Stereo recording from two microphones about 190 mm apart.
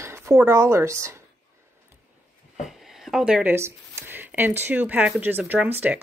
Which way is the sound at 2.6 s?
Centre (ahead or behind).